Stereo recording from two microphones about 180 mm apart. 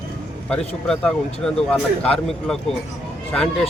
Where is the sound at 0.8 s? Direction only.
5° left (ahead or behind).